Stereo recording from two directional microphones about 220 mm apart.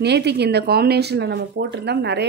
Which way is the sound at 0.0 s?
50° right (ahead or behind).